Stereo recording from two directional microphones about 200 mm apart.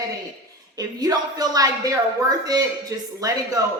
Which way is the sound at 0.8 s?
20° right (ahead or behind).